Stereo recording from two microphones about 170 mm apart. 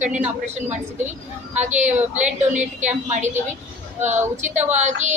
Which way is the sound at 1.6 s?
45° right (ahead or behind).